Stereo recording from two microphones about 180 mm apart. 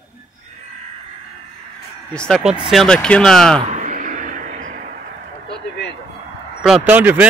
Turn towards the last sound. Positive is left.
turn(degrees=-10)  # may be behind; listen again after turning